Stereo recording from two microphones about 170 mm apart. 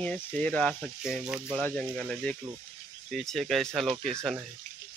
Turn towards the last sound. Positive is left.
turn(degrees=5)  # may be behind; listen again after turning